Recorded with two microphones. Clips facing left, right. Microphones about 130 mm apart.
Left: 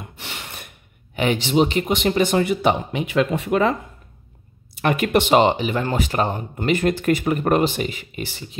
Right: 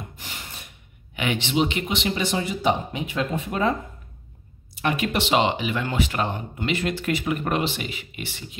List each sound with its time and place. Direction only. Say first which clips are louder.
0.1 s a sound: left 4 dB; 75° left (ahead or behind)
1.1 s speech: left 5 dB; 40° left (ahead or behind); by 3.7 s 75° left (ahead or behind)
4.7 s speech: left 6 dB; 55° left (ahead or behind); by 8.5 s 35° left (ahead or behind)